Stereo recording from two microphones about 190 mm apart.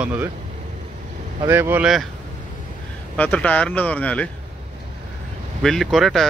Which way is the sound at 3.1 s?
10° left (ahead or behind).